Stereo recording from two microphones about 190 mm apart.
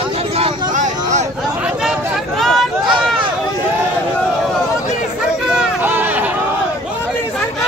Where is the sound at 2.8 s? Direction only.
25° right (ahead or behind).